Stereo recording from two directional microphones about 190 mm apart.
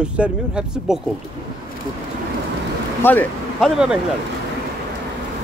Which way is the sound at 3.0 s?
10° left (ahead or behind).